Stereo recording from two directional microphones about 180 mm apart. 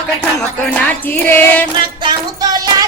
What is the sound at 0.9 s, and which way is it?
Music, 10° left (ahead or behind).